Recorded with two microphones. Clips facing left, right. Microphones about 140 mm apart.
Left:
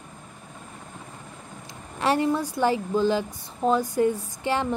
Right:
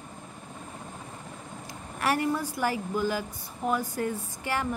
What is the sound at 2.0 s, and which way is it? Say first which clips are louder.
Speech: left 4 dB; 25° left (ahead or behind).